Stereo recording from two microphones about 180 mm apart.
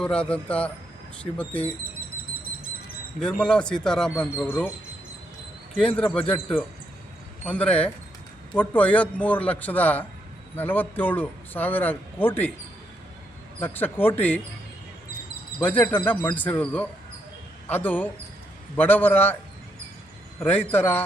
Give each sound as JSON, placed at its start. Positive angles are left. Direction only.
{"t": 0.0, "sound": "a man's voice", "side_deg": 5}
{"t": 3.2, "sound": "a man's voice", "side_deg": 5}
{"t": 6.0, "sound": "a man's voice", "side_deg": 10}
{"t": 6.2, "sound": "speech", "side_deg": 30}
{"t": 7.4, "sound": "a man's voice", "side_deg": 10}
{"t": 13.6, "sound": "a man's voice", "side_deg": 10}
{"t": 15.5, "sound": "a man's voice", "side_deg": 10}
{"t": 20.4, "sound": "a man's voice", "side_deg": 10}